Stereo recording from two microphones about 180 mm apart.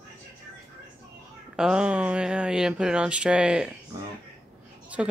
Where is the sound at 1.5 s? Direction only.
5° right (ahead or behind).